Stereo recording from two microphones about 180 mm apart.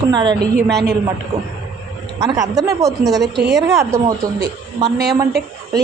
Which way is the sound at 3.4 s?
65° right (ahead or behind).